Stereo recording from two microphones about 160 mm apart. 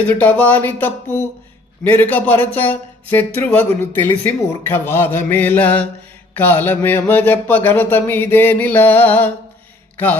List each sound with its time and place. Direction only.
0.2 s speech: 10° left (ahead or behind)